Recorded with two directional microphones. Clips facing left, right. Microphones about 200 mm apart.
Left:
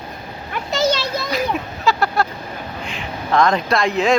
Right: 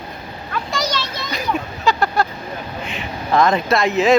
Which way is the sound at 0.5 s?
25° left (ahead or behind).